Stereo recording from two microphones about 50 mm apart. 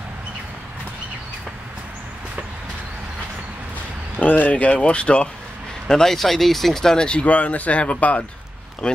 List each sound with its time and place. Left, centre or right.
4.2 s speech: left
5.9 s speech: centre